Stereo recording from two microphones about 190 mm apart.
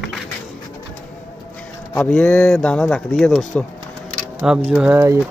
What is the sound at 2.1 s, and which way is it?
Speech, 5° left (ahead or behind).